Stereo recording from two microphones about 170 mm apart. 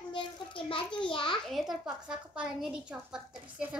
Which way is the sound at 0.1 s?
30° left (ahead or behind).